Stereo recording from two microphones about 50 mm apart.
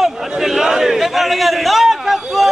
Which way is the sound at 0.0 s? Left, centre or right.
Centre.